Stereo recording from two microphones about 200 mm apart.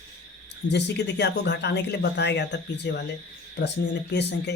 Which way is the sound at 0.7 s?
60° left (ahead or behind).